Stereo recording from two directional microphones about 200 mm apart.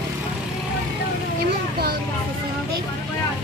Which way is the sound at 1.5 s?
50° right (ahead or behind).